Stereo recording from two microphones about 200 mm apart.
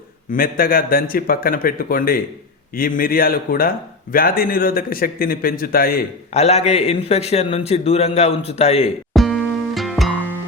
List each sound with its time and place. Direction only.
0.3 s a man's voice: 45° left (ahead or behind)
6.3 s a man's voice: 30° left (ahead or behind)
9.1 s music: centre (ahead or behind)